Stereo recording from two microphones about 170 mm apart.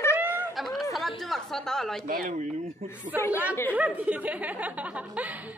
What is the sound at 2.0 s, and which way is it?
Speech, 50° right (ahead or behind).